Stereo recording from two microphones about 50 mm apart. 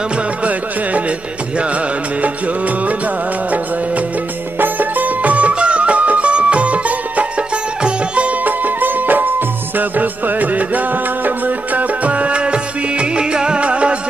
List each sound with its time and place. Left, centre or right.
0.4 s music: right
4.6 s music: right
8.5 s music: right